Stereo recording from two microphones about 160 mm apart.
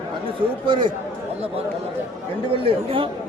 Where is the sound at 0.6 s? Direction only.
30° right (ahead or behind).